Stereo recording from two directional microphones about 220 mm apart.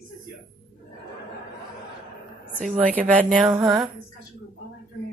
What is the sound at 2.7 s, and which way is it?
Speech, 35° right (ahead or behind).